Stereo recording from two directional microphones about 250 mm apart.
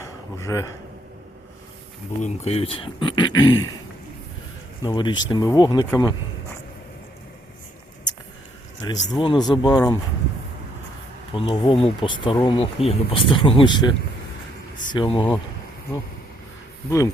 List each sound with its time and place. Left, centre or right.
0.3 s speech: centre
2.2 s speech: left
4.8 s speech: centre
8.8 s speech: centre
11.3 s speech: left